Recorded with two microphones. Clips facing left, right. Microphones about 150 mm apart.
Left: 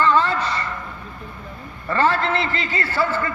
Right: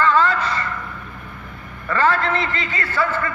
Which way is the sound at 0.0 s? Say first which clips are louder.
Right 1 dB; 25° left (ahead or behind).